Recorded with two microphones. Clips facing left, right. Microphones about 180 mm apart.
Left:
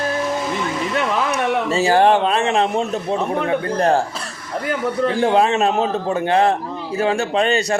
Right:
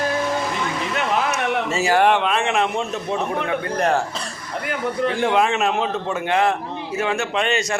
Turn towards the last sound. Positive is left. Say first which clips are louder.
# left 4 dB
turn(degrees=35)  # may be behind; listen again after turning